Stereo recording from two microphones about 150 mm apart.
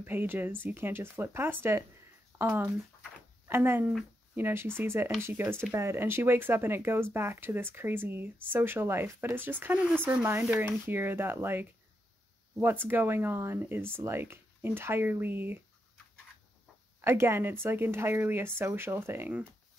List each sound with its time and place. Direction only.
0.0 s speech: 15° right (ahead or behind)
17.0 s speech: 15° right (ahead or behind)